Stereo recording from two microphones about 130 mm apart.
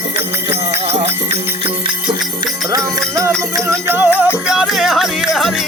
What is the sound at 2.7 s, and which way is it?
Music, 25° right (ahead or behind).